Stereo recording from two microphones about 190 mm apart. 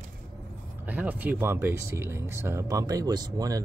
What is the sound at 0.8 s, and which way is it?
Speech, 10° right (ahead or behind).